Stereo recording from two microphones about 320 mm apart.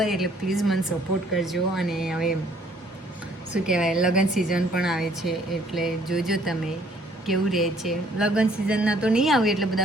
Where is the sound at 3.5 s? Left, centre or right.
Centre.